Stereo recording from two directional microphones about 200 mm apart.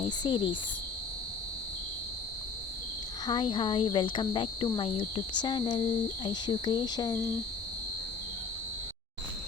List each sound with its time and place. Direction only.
0.0 s cricket: 25° left (ahead or behind)
3.2 s speech: 25° left (ahead or behind)